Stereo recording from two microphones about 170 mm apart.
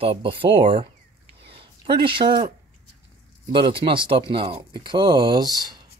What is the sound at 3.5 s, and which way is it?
Speech, 30° right (ahead or behind).